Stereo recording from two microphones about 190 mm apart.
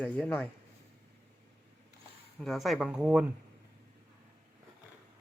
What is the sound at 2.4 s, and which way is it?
Speech, centre (ahead or behind).